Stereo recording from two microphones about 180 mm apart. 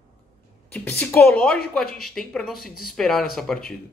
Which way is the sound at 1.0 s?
10° left (ahead or behind).